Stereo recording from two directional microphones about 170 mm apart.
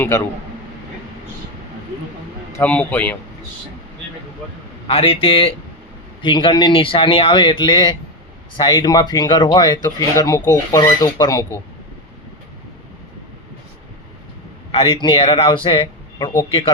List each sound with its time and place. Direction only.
2.5 s speech: 10° left (ahead or behind)
4.9 s a man's voice: 35° left (ahead or behind)
14.7 s a man's voice: 30° left (ahead or behind)